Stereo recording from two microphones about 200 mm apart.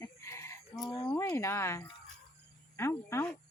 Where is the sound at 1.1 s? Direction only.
15° left (ahead or behind).